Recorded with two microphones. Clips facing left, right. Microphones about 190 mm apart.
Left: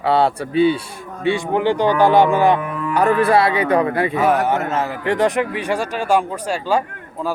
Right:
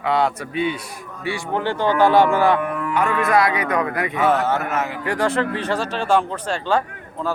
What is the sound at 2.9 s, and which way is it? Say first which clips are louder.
Speech: left 5 dB; 35° left (ahead or behind).